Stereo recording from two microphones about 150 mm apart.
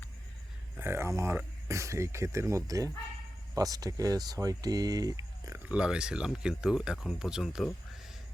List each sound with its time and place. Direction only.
0.8 s speech: 15° right (ahead or behind)
5.6 s speech: 5° right (ahead or behind)